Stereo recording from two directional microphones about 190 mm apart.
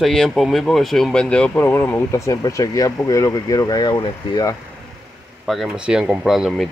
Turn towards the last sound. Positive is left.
turn(degrees=0)  # may be behind; listen again after turning